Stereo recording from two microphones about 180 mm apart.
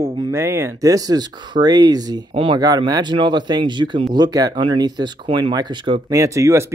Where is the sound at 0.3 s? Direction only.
15° right (ahead or behind).